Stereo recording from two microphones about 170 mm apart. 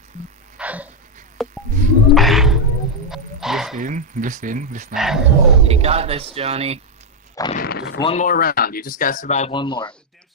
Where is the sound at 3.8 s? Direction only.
50° right (ahead or behind).